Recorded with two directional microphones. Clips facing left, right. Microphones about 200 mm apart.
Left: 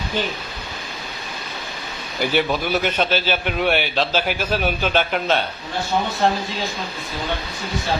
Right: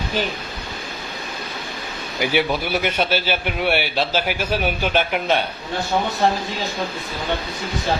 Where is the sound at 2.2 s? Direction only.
10° right (ahead or behind).